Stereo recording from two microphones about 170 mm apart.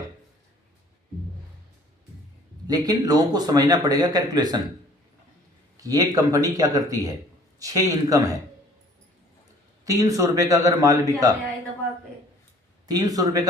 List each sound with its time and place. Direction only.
2.6 s speech: 20° right (ahead or behind)
5.8 s speech: 20° right (ahead or behind)
9.8 s speech: 20° right (ahead or behind)
12.9 s speech: 20° right (ahead or behind)